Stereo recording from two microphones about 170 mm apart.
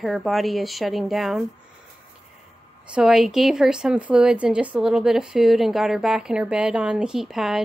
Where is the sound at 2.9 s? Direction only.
5° right (ahead or behind).